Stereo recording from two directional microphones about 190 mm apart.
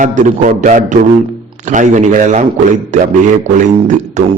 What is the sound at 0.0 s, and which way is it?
A man's voice, 40° right (ahead or behind).